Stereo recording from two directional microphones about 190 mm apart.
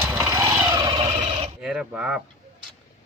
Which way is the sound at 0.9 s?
25° right (ahead or behind).